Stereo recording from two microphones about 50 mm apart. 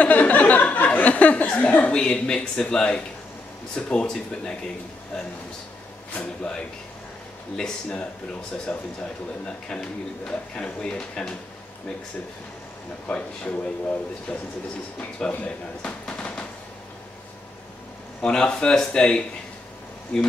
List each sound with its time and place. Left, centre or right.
0.0 s a sound: left
3.7 s speech: left
8.7 s speech: left
13.0 s speech: left
18.2 s speech: centre